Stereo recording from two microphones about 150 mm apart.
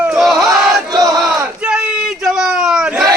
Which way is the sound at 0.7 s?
25° right (ahead or behind).